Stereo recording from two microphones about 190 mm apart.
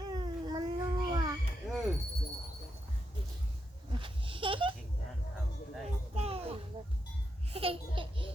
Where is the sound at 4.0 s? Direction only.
25° right (ahead or behind).